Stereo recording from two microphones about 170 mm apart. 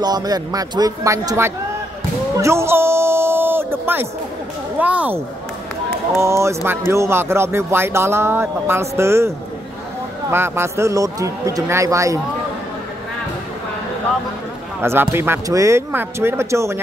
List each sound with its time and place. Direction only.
0.0 s a man's voice: 25° right (ahead or behind)
2.3 s a sound: 15° right (ahead or behind)
4.7 s speech: 10° right (ahead or behind)
10.3 s speech: 15° right (ahead or behind)
14.8 s speech: 15° right (ahead or behind)